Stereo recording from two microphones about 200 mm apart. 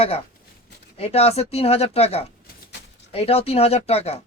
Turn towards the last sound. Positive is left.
turn(degrees=30)  # may be behind; listen again after turning